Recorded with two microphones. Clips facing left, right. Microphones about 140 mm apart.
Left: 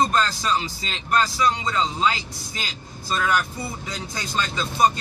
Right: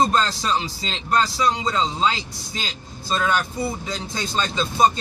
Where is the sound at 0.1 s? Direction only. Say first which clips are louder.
Right 1 dB; 30° right (ahead or behind).